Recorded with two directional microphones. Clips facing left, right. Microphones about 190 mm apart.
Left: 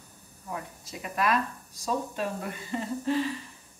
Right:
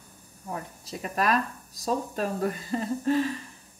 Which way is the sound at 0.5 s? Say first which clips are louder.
Right 2 dB; 35° right (ahead or behind).